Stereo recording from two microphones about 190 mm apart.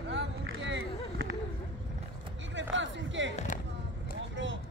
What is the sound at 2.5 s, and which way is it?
Music, 75° right (ahead or behind).